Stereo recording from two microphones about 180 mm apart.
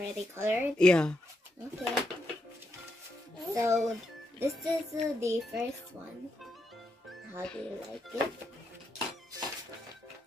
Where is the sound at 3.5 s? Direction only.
15° right (ahead or behind).